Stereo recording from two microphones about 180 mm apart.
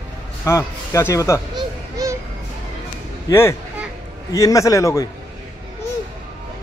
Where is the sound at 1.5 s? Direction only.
20° right (ahead or behind).